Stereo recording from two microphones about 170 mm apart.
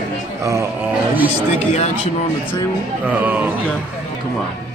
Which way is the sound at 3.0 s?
10° right (ahead or behind).